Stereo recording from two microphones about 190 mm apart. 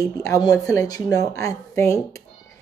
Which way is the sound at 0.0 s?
15° left (ahead or behind).